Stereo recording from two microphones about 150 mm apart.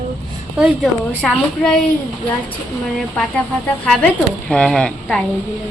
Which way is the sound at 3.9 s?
5° left (ahead or behind).